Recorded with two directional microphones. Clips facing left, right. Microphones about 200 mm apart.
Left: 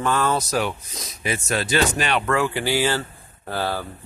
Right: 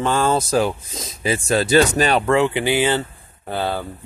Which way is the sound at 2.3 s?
20° right (ahead or behind).